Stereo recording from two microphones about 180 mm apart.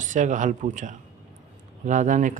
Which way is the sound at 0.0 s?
45° right (ahead or behind).